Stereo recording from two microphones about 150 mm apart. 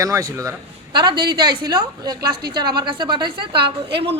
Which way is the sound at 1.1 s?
90° right.